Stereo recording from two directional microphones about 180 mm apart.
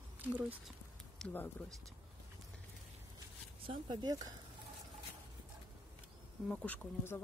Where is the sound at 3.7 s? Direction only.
25° right (ahead or behind).